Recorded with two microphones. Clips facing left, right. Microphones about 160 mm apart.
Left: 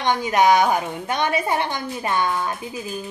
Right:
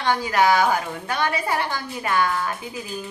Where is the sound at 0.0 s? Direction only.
20° left (ahead or behind).